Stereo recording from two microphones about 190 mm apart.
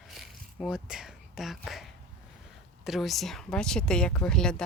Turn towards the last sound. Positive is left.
turn(degrees=5)  # may be behind; listen again after turning